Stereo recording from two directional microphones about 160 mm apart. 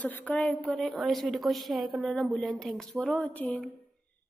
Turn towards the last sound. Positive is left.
turn(degrees=10)  # may be behind; listen again after turning